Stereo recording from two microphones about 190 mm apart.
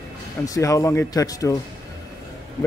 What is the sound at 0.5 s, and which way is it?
Speech, 15° left (ahead or behind).